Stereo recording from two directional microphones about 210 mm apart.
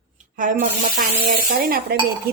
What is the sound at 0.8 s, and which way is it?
Speech, 40° right (ahead or behind).